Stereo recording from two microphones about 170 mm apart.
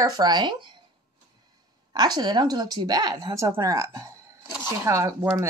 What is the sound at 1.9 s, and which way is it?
A woman's voice, 25° right (ahead or behind).